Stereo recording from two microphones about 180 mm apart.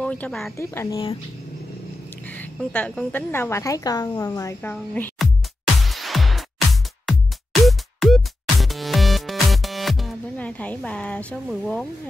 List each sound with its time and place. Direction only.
0.0 s speech: 5° left (ahead or behind)
0.6 s a woman's voice: 15° left (ahead or behind)
2.0 s a woman's voice: 10° left (ahead or behind)
5.2 s music: centre (ahead or behind)